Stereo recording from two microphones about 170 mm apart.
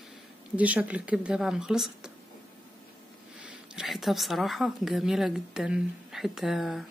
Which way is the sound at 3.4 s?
5° right (ahead or behind).